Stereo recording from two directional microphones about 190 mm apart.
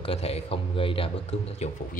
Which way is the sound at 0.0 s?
30° left (ahead or behind).